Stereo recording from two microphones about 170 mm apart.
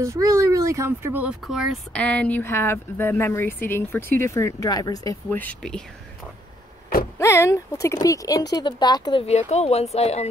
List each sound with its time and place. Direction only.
0.0 s speech: 20° right (ahead or behind); by 2.0 s centre (ahead or behind)
2.0 s speech: 10° left (ahead or behind)
7.2 s speech: 15° left (ahead or behind)
9.2 s speech: 40° left (ahead or behind)